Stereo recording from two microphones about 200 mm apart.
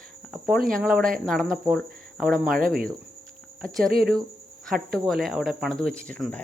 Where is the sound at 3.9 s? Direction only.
50° right (ahead or behind).